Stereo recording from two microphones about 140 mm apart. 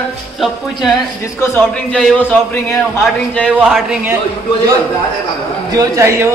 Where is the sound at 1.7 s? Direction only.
5° left (ahead or behind).